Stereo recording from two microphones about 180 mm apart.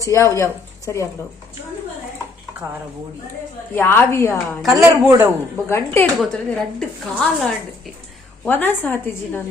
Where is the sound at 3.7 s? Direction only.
15° left (ahead or behind).